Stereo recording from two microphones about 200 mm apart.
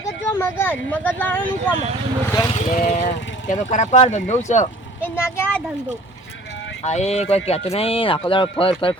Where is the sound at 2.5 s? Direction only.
35° left (ahead or behind).